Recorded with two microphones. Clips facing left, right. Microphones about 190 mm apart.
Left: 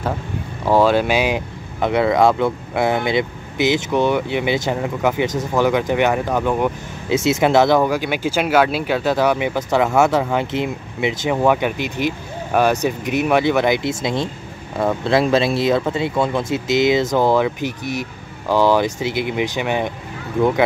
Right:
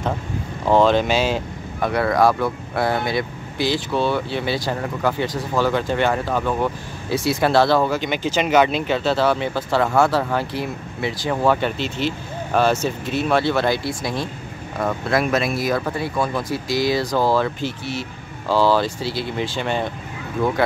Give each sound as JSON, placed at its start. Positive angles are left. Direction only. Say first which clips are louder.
{"t": 0.7, "sound": "speech", "louder": "left 1 dB", "side_deg": 10}